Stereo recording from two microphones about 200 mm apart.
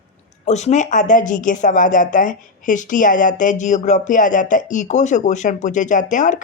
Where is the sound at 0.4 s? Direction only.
35° left (ahead or behind).